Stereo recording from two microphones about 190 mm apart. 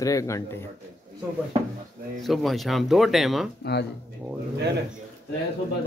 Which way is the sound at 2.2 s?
Centre (ahead or behind).